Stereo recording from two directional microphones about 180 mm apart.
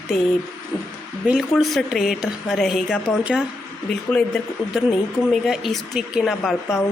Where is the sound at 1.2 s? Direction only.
Centre (ahead or behind).